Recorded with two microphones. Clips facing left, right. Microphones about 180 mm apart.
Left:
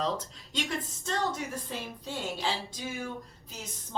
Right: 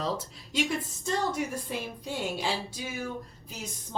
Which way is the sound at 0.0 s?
10° right (ahead or behind).